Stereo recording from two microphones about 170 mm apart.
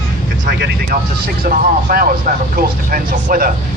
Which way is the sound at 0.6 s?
65° right (ahead or behind).